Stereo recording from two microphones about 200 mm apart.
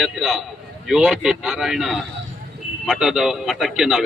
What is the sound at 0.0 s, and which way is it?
A man's voice, centre (ahead or behind).